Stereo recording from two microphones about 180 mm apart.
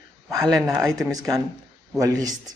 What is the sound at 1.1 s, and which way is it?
Speech, 20° right (ahead or behind).